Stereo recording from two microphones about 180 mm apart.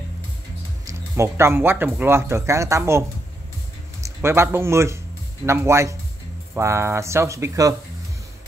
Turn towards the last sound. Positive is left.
turn(degrees=-15)  # may be behind; listen again after turning